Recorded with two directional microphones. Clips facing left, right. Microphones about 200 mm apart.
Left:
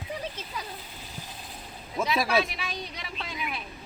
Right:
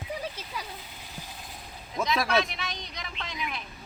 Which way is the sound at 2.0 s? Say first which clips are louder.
Left 1 dB; 5° left (ahead or behind).